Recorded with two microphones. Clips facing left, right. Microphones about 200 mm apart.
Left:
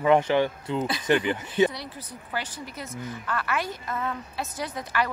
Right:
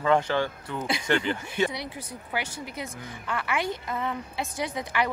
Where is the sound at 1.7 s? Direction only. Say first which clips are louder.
Right 2 dB; 15° right (ahead or behind).